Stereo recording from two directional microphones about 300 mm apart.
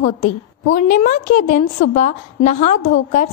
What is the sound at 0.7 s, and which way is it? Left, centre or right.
A woman's voice, left.